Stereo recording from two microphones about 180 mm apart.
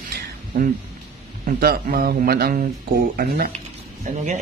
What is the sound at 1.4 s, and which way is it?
Speech, 55° right (ahead or behind).